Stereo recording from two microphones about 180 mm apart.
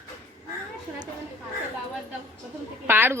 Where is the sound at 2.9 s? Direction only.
10° right (ahead or behind).